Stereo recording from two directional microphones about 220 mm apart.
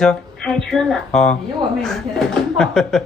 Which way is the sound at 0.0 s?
5° left (ahead or behind).